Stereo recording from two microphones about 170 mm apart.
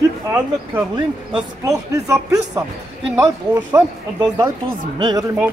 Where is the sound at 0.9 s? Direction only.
25° right (ahead or behind).